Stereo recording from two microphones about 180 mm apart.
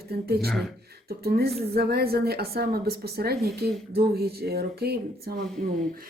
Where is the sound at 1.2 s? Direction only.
60° right (ahead or behind).